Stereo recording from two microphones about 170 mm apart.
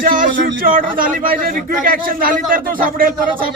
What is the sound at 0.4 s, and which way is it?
A man's voice, 55° right (ahead or behind).